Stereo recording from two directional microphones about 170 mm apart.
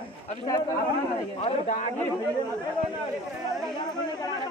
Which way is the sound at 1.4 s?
45° left (ahead or behind).